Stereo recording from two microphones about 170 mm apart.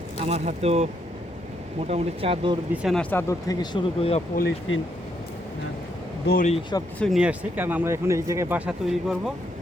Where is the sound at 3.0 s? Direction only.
10° left (ahead or behind); by 4.2 s 30° left (ahead or behind).